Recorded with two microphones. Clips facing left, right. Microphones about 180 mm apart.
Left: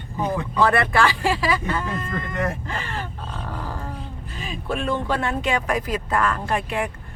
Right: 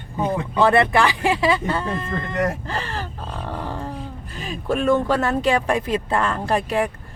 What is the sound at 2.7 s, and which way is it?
Grunt, 35° right (ahead or behind).